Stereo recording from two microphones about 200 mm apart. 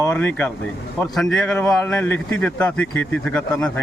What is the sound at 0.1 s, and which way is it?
Speech, 5° left (ahead or behind).